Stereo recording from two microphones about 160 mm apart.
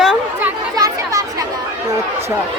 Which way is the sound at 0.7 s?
25° right (ahead or behind).